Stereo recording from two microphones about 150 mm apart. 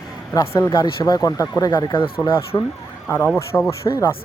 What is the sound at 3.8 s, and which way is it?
Speech, 25° left (ahead or behind).